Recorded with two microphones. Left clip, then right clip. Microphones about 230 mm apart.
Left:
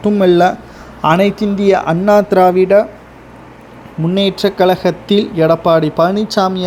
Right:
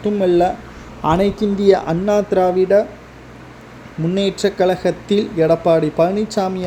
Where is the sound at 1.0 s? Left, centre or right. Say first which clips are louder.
Left 4 dB; centre.